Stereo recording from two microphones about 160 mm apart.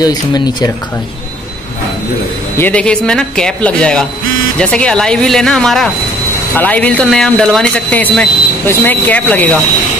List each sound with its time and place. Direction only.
0.0 s speech: 25° left (ahead or behind)
2.5 s speech: 10° left (ahead or behind)